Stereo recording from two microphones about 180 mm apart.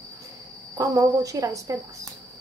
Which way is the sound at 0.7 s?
20° right (ahead or behind).